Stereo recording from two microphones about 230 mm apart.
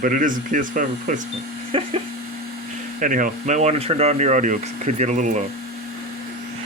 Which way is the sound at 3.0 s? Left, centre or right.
Right.